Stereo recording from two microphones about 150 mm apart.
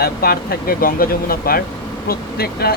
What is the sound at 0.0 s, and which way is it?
Speech, 90° left.